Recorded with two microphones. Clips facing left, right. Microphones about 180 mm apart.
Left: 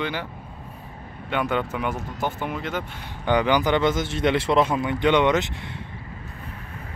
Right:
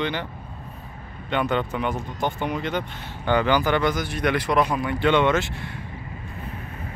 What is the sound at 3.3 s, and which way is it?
Speech, 15° left (ahead or behind).